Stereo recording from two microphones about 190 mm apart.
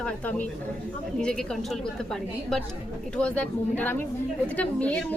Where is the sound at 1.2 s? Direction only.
5° left (ahead or behind).